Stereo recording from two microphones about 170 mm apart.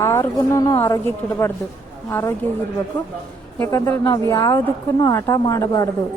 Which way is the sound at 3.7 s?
15° left (ahead or behind).